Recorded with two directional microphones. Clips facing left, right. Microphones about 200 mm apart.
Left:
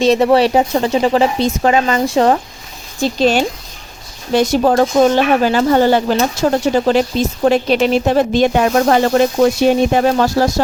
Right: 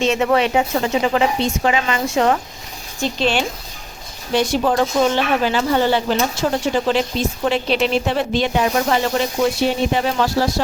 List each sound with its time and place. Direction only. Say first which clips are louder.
0.0 s speech: left 6 dB; 35° left (ahead or behind)